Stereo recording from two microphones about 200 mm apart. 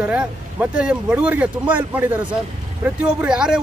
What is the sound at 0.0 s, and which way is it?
A man's voice, 5° right (ahead or behind).